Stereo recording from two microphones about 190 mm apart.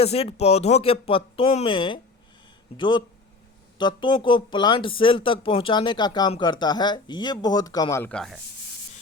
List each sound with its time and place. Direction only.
0.0 s speech: 35° left (ahead or behind); by 8.4 s 5° left (ahead or behind)